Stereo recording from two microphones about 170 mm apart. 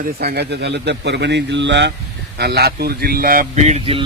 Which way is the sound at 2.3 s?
70° right (ahead or behind).